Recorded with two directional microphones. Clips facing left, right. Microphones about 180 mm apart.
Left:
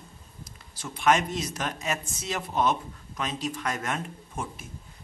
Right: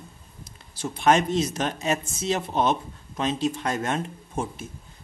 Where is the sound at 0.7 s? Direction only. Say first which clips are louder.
Right 3 dB; 30° right (ahead or behind).